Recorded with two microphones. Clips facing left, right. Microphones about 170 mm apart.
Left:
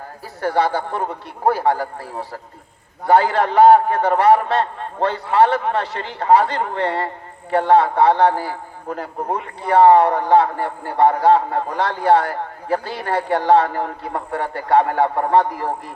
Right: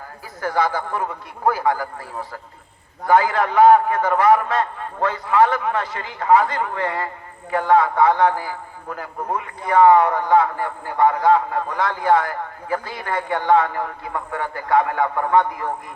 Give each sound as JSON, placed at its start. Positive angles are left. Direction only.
{"t": 0.4, "sound": "a man's voice", "side_deg": 30}